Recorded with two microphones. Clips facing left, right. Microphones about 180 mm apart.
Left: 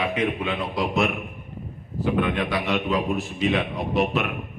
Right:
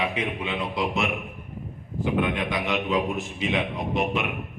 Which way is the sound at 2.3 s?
15° right (ahead or behind).